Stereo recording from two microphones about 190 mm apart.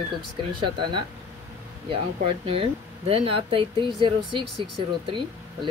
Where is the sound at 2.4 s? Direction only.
30° right (ahead or behind).